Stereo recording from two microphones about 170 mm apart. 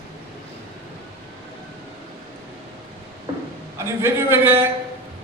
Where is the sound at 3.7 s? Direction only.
15° right (ahead or behind).